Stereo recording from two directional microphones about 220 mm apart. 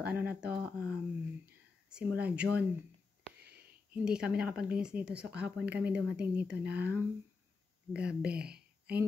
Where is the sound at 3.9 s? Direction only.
5° right (ahead or behind).